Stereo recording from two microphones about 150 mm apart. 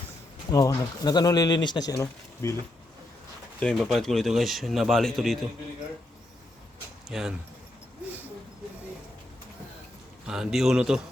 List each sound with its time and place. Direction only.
0.5 s speech: 25° left (ahead or behind)
3.6 s a man's voice: 5° left (ahead or behind)
7.1 s a man's voice: 5° right (ahead or behind)
10.2 s a man's voice: 5° right (ahead or behind)